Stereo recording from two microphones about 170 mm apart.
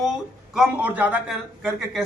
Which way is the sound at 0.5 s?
10° right (ahead or behind).